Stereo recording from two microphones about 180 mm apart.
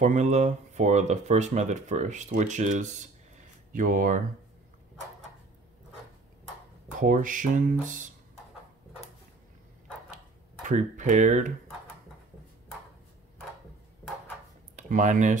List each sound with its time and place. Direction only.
0.0 s speech: 40° right (ahead or behind)
7.0 s speech: 45° right (ahead or behind)
10.1 s tick-tock: 45° right (ahead or behind)
14.8 s speech: 45° right (ahead or behind)